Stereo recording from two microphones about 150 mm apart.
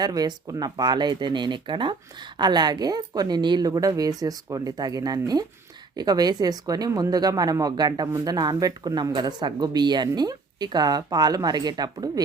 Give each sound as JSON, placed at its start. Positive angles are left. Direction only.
{"t": 0.0, "sound": "a woman's voice", "side_deg": -25}